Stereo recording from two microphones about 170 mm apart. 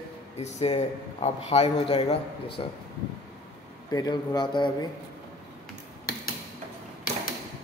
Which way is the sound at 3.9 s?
25° left (ahead or behind).